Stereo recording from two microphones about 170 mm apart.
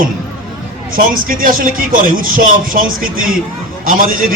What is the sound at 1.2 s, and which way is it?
A man's voice, 55° right (ahead or behind).